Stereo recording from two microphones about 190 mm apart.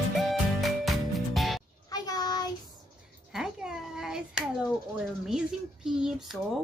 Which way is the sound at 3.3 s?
Centre (ahead or behind).